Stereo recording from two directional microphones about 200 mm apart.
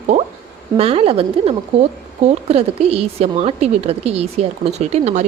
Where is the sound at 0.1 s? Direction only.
35° right (ahead or behind).